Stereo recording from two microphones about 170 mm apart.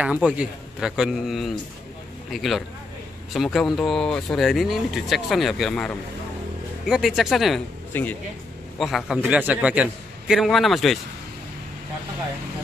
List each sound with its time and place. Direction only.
0.0 s speech: 5° right (ahead or behind)